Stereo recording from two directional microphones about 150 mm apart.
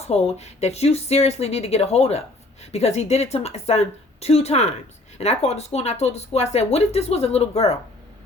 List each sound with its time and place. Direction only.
0.0 s speech: 45° left (ahead or behind)